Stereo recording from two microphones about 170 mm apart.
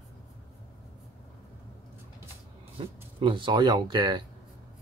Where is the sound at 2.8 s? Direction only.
30° right (ahead or behind).